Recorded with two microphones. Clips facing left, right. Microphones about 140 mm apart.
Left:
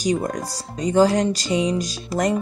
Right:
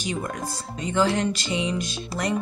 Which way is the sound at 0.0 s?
40° left (ahead or behind).